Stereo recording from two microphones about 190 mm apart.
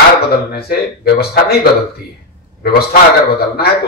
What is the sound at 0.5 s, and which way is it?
A man's voice, 55° left (ahead or behind).